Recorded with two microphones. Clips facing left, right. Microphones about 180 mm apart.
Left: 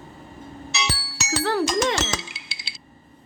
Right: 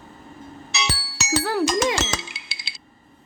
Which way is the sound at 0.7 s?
60° right (ahead or behind).